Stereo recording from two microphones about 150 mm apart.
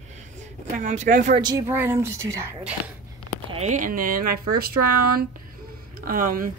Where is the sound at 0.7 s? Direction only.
55° right (ahead or behind).